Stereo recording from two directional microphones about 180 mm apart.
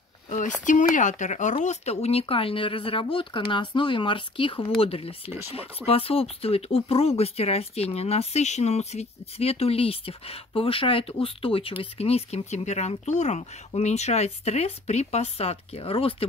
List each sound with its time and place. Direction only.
0.7 s speech: 45° left (ahead or behind)